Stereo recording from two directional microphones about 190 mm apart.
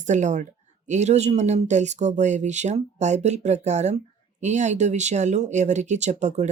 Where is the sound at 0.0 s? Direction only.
40° right (ahead or behind).